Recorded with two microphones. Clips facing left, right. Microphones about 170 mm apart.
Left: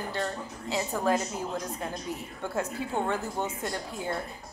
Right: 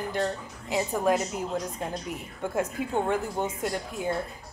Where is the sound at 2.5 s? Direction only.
10° right (ahead or behind).